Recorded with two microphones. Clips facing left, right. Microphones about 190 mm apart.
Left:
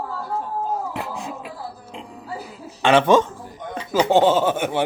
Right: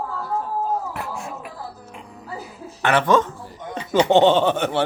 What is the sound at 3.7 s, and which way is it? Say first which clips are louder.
Speech: right 1 dB; 5° left (ahead or behind).